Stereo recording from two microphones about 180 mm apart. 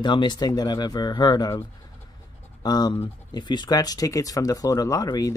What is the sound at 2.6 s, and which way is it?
Speech, 20° left (ahead or behind).